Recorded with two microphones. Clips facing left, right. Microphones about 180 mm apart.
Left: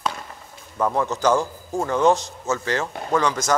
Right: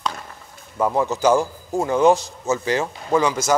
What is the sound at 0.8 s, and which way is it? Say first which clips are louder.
Speech: right 2 dB; 10° right (ahead or behind).